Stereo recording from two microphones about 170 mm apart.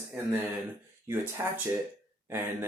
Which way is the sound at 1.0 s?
15° right (ahead or behind).